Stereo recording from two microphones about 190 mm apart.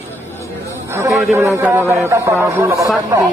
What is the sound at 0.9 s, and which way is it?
A man's voice, 15° right (ahead or behind).